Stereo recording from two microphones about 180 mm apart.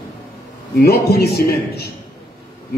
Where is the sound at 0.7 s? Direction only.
60° left (ahead or behind).